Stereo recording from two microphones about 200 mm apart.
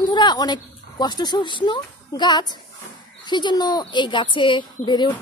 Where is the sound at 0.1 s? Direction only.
20° left (ahead or behind).